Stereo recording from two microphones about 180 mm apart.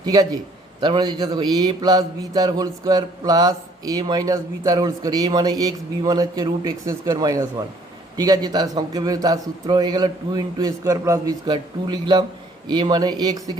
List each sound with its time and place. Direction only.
0.0 s a man's voice: 20° right (ahead or behind)